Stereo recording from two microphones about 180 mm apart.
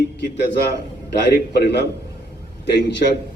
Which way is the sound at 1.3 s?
65° left (ahead or behind).